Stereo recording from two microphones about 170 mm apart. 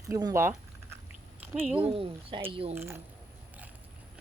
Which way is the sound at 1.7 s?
35° right (ahead or behind).